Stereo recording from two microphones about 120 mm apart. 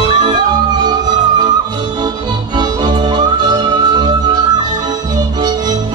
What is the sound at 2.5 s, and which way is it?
Music, 35° right (ahead or behind).